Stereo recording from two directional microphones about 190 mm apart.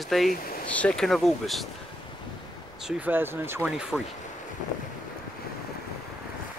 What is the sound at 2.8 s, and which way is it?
Speech, 5° right (ahead or behind).